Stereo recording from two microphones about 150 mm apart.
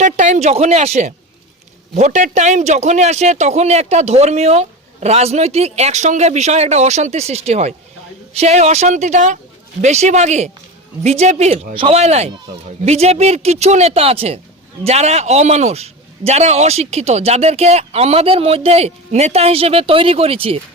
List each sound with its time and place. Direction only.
0.0 s speech: 55° right (ahead or behind)